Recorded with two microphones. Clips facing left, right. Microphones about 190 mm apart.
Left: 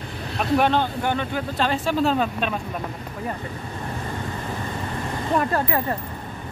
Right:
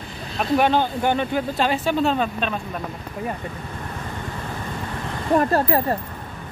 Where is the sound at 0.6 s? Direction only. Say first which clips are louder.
Right 2 dB; 5° right (ahead or behind).